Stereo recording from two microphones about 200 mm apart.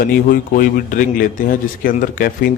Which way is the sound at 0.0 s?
45° left (ahead or behind).